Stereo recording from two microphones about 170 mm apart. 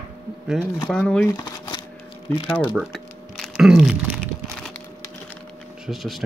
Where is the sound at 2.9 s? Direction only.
Centre (ahead or behind).